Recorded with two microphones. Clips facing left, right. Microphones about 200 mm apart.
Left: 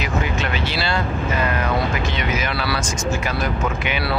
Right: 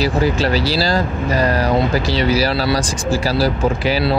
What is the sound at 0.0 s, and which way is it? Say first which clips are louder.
Speech: right 7 dB; 35° right (ahead or behind).